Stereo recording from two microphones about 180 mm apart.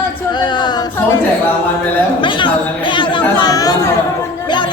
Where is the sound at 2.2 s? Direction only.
30° left (ahead or behind).